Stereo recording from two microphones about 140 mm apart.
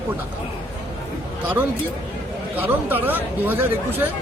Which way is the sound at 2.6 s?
15° right (ahead or behind).